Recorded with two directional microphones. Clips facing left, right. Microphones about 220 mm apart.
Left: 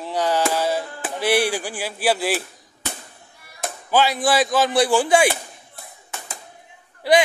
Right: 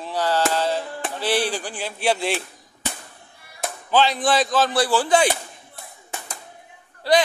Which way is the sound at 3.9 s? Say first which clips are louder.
Left 1 dB; 10° left (ahead or behind).